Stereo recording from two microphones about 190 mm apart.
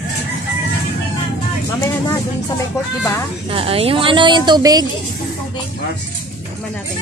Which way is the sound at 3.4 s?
30° right (ahead or behind).